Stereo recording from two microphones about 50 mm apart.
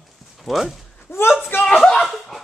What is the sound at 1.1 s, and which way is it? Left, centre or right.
Speech, left.